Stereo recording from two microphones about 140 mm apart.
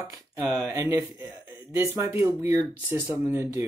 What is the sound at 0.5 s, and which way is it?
Speech, 20° right (ahead or behind).